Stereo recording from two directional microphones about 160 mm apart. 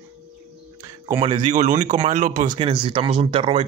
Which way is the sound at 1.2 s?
30° right (ahead or behind).